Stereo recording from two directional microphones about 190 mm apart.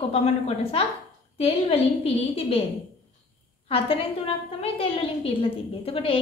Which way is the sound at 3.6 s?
30° left (ahead or behind).